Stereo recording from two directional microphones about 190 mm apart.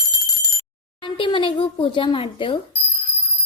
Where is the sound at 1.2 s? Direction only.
25° left (ahead or behind).